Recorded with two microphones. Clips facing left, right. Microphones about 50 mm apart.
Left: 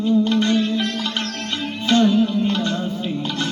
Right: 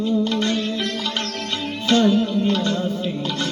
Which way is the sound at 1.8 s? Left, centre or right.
Left.